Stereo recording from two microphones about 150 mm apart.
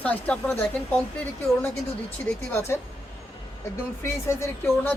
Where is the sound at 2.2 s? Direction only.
15° left (ahead or behind).